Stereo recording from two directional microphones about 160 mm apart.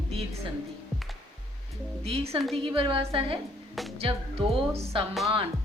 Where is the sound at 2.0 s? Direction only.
40° right (ahead or behind).